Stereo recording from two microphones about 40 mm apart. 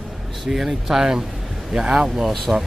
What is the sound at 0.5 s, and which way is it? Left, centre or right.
Speech, centre.